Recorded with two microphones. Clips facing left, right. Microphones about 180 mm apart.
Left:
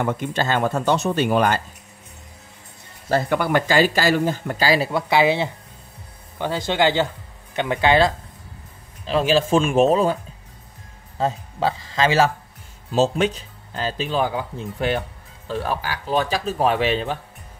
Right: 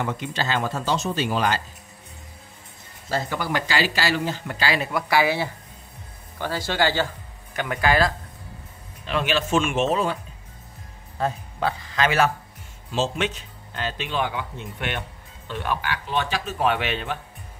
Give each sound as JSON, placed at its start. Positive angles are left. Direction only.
{"t": 0.0, "sound": "speech", "side_deg": 55}
{"t": 3.1, "sound": "speech", "side_deg": 60}
{"t": 5.1, "sound": "a man's voice", "side_deg": 20}
{"t": 11.1, "sound": "a man's voice", "side_deg": 25}
{"t": 12.9, "sound": "speech", "side_deg": 40}